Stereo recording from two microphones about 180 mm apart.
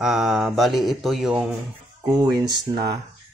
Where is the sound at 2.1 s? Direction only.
20° right (ahead or behind).